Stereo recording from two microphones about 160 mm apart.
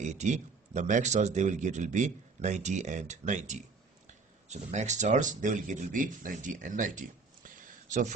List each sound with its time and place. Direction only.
0.0 s speech: 45° right (ahead or behind)